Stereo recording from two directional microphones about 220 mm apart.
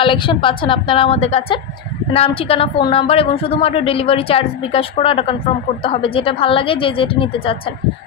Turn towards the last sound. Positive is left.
turn(degrees=25)  # may be behind; listen again after turning